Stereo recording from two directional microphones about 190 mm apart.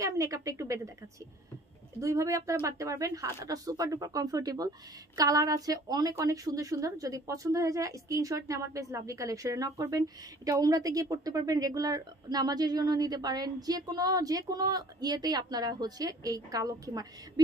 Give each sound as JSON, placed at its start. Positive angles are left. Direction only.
{"t": 0.0, "sound": "a woman's voice", "side_deg": -15}
{"t": 2.0, "sound": "speech", "side_deg": -15}